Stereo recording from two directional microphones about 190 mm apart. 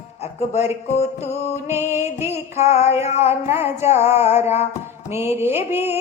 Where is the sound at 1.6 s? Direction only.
15° right (ahead or behind).